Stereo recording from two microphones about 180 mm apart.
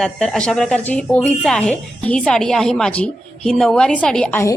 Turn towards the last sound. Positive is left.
turn(degrees=5)  # may be behind; listen again after turning